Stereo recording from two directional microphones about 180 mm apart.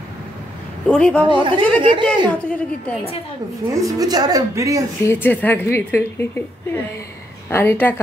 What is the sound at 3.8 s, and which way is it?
A woman's voice, 20° right (ahead or behind).